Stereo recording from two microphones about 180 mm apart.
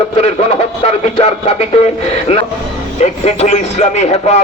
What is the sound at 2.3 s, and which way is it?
Speech, 35° left (ahead or behind).